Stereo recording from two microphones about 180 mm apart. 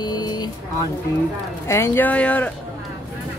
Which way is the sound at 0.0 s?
25° left (ahead or behind).